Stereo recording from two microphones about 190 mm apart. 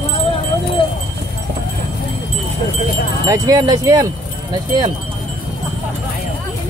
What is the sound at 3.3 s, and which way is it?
Wind chime, 20° right (ahead or behind).